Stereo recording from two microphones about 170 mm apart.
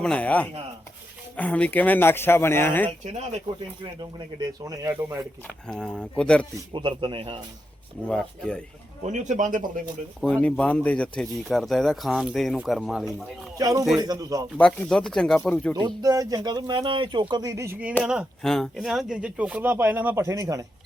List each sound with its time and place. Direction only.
0.0 s speech: 5° left (ahead or behind)
3.0 s speech: 40° right (ahead or behind)
4.4 s speech: 20° right (ahead or behind)
5.6 s speech: 5° left (ahead or behind)
6.7 s speech: 30° right (ahead or behind)
8.0 s speech: 5° left (ahead or behind)
9.1 s speech: 45° right (ahead or behind)
10.2 s speech: 5° left (ahead or behind)
13.6 s speech: 20° right (ahead or behind)
14.6 s speech: 5° left (ahead or behind)
16.0 s speech: 20° right (ahead or behind)